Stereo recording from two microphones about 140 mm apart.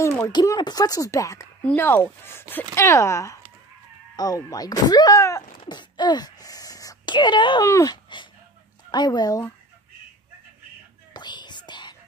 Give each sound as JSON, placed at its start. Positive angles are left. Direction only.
{"t": 0.0, "sound": "a sound", "side_deg": 20}
{"t": 0.3, "sound": "speech", "side_deg": 30}
{"t": 1.6, "sound": "speech", "side_deg": 10}
{"t": 11.1, "sound": "whispering", "side_deg": 30}